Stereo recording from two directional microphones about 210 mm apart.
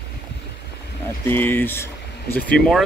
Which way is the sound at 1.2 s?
10° left (ahead or behind).